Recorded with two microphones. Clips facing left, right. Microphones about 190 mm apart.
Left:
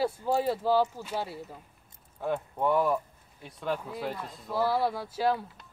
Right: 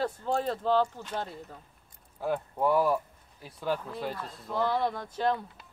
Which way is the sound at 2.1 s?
5° right (ahead or behind).